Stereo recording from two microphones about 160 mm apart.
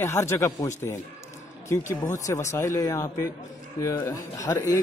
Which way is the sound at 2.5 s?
20° left (ahead or behind).